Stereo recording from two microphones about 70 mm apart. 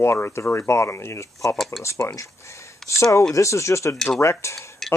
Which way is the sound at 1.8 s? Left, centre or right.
Left.